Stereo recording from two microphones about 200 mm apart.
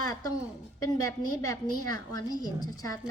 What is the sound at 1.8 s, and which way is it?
A woman's voice, 20° left (ahead or behind).